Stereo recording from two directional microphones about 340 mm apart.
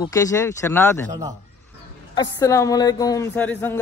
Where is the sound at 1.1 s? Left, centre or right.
Centre.